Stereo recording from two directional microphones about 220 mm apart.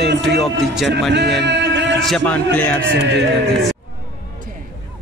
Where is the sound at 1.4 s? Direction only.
50° right (ahead or behind).